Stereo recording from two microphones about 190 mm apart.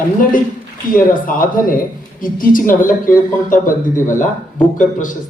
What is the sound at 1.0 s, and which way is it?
A woman's voice, 45° left (ahead or behind).